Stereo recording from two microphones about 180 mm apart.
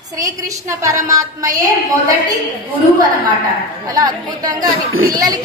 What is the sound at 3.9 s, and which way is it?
Speech, 20° right (ahead or behind).